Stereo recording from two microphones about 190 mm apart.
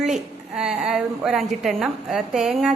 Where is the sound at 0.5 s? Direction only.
5° right (ahead or behind).